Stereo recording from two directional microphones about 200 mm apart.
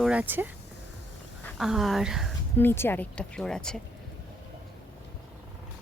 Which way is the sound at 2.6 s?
10° left (ahead or behind).